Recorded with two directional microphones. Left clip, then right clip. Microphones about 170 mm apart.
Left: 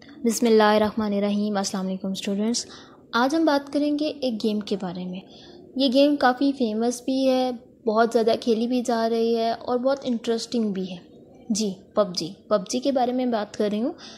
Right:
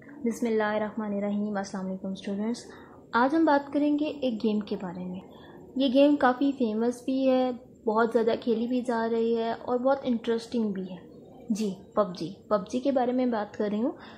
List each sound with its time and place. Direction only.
0.2 s a woman's voice: 40° left (ahead or behind)
0.9 s speech: 35° left (ahead or behind)
3.1 s a woman's voice: 15° left (ahead or behind)
5.8 s a woman's voice: 15° left (ahead or behind)
11.5 s a woman's voice: 15° left (ahead or behind)